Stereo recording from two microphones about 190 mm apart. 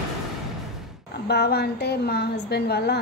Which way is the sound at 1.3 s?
60° left (ahead or behind).